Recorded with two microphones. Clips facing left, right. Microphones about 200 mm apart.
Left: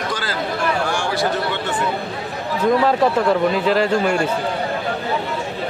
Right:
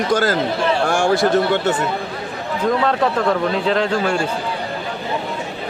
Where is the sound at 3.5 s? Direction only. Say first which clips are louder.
Left 1 dB; 5° left (ahead or behind).